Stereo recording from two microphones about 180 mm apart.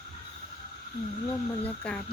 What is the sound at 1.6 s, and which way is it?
Speech, 5° left (ahead or behind).